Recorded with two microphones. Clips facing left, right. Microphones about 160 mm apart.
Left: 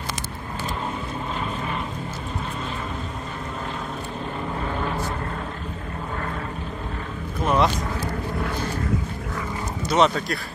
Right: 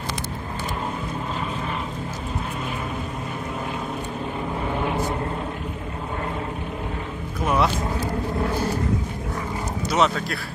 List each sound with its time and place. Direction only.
4.7 s vehicle: 15° right (ahead or behind)
7.4 s vehicle: 10° right (ahead or behind)
9.8 s speech: 5° right (ahead or behind)